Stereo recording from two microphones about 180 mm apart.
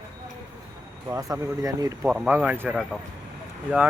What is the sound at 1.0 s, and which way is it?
Speech, 20° right (ahead or behind).